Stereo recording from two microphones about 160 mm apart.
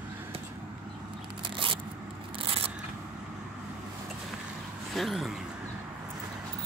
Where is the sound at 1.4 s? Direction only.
30° right (ahead or behind).